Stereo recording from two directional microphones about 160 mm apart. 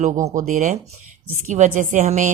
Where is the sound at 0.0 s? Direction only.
50° right (ahead or behind).